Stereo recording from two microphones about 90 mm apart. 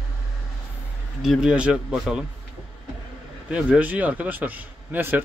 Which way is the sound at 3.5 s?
15° right (ahead or behind).